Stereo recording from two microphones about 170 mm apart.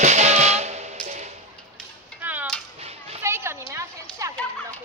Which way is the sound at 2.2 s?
10° right (ahead or behind).